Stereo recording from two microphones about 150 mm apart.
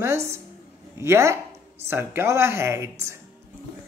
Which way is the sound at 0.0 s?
20° right (ahead or behind).